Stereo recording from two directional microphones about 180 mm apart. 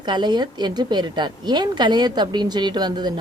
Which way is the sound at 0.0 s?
25° right (ahead or behind).